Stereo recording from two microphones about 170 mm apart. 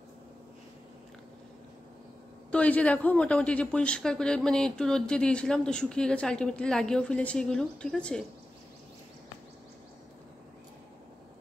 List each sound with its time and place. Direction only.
2.5 s speech: 10° left (ahead or behind)